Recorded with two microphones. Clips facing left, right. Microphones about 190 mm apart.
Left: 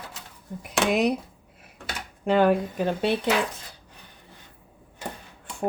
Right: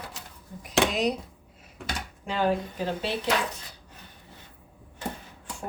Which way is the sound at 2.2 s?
60° left (ahead or behind).